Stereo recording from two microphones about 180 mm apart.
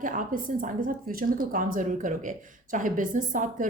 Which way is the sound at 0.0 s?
50° right (ahead or behind).